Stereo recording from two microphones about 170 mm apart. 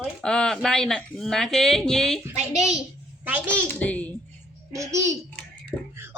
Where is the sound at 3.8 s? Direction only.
10° left (ahead or behind).